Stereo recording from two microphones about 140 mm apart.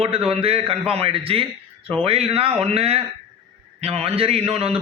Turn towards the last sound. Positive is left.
turn(degrees=-45)  # may be behind; listen again after turning